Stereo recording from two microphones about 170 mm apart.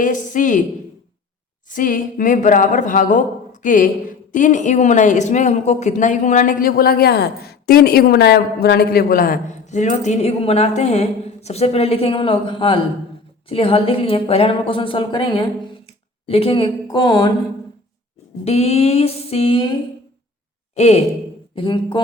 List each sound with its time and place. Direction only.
0.0 s a woman's voice: 50° left (ahead or behind)
1.7 s a woman's voice: 55° left (ahead or behind); by 17.3 s 25° left (ahead or behind)
18.4 s a woman's voice: 40° left (ahead or behind)
20.7 s a woman's voice: 40° left (ahead or behind)
21.5 s speech: 30° left (ahead or behind)